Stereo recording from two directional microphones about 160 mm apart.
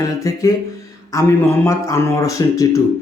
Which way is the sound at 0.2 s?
20° left (ahead or behind).